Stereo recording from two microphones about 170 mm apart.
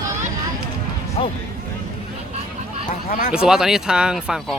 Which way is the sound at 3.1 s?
50° left (ahead or behind).